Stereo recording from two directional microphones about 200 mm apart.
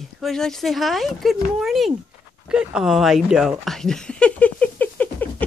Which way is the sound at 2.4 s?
5° right (ahead or behind).